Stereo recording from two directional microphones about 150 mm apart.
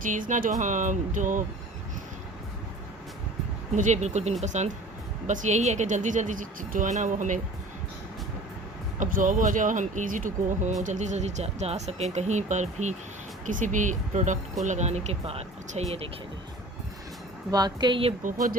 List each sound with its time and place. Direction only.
0.0 s speech: 60° right (ahead or behind)
3.8 s speech: 50° right (ahead or behind)
9.0 s speech: 65° right (ahead or behind); by 16.0 s 45° right (ahead or behind)
17.5 s a woman's voice: 30° right (ahead or behind)
18.2 s speech: 60° right (ahead or behind)